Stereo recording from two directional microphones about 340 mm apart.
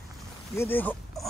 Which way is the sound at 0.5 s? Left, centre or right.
Centre.